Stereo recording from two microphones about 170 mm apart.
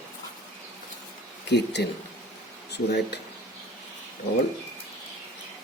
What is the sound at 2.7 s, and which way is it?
Speech, 75° left (ahead or behind).